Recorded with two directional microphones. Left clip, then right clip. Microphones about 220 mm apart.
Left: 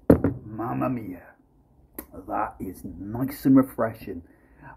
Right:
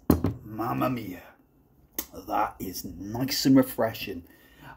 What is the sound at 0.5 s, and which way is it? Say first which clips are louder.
Speech: even; 10° right (ahead or behind).